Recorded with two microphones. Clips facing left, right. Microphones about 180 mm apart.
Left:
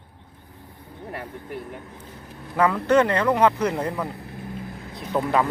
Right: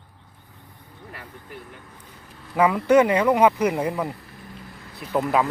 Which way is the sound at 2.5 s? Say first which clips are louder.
Right 2 dB; 10° right (ahead or behind).